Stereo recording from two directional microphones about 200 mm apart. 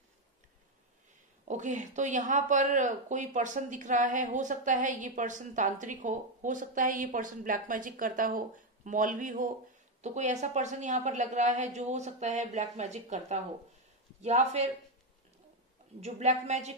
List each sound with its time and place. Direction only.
1.5 s speech: 40° right (ahead or behind)
16.0 s speech: 35° right (ahead or behind)